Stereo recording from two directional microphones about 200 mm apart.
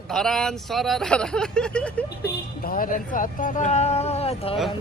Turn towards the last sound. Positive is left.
turn(degrees=30)  # may be behind; listen again after turning